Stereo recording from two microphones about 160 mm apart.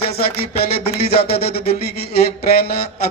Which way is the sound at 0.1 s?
75° left (ahead or behind).